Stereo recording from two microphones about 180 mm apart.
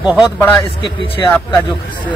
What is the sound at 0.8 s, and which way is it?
Speech, 30° left (ahead or behind).